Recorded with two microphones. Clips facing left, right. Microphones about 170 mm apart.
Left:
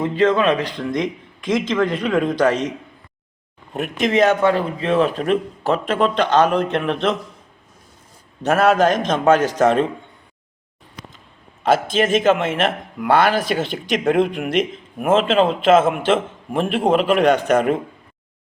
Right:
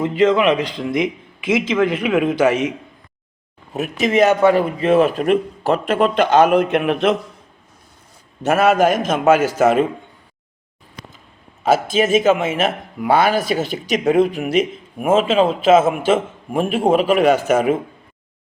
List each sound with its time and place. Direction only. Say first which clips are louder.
0.0 s speech: right 2 dB; 25° right (ahead or behind)
0.9 s a man's voice: right 4 dB; 10° right (ahead or behind)
8.4 s a man's voice: right 1 dB; 5° right (ahead or behind)
11.6 s a man's voice: right 1 dB; 5° right (ahead or behind)